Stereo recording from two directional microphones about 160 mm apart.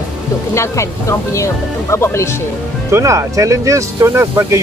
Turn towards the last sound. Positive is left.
turn(degrees=-15)  # may be behind; listen again after turning